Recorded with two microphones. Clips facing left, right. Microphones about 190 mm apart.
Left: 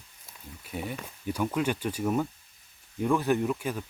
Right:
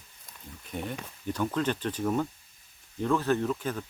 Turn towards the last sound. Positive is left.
turn(degrees=10)  # may be behind; listen again after turning